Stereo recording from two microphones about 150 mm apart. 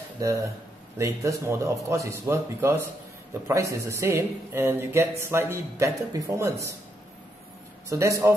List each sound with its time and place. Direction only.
0.2 s speech: 20° right (ahead or behind)
3.8 s speech: 20° right (ahead or behind)
7.9 s speech: 20° right (ahead or behind)